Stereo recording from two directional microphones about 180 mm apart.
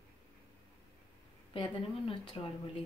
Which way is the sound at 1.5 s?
25° left (ahead or behind).